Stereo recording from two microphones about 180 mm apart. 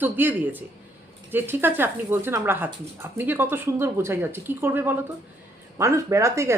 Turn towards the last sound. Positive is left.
turn(degrees=-15)  # may be behind; listen again after turning